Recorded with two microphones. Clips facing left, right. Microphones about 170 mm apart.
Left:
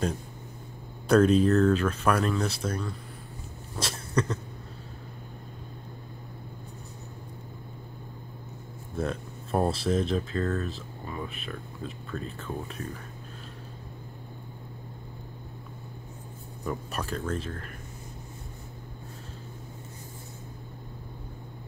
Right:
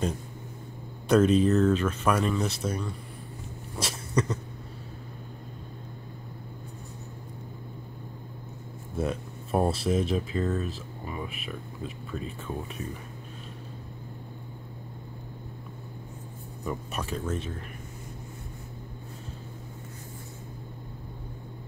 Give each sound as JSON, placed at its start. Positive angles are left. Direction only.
{"t": 1.0, "sound": "speech", "side_deg": 0}
{"t": 4.1, "sound": "a sound", "side_deg": -10}
{"t": 8.9, "sound": "music", "side_deg": -5}
{"t": 9.8, "sound": "speech", "side_deg": -5}
{"t": 16.6, "sound": "speech", "side_deg": 0}